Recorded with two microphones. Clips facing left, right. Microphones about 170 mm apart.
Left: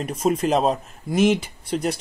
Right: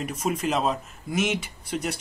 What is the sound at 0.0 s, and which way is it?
Speech, 30° left (ahead or behind).